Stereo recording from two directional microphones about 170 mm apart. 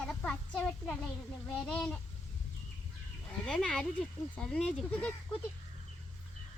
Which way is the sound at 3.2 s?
5° left (ahead or behind).